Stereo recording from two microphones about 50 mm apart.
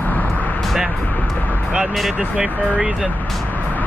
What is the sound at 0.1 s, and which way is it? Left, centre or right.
Vehicle, left.